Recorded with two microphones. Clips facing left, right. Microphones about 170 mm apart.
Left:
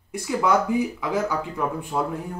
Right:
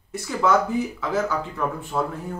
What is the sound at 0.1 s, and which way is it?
Speech, 15° left (ahead or behind).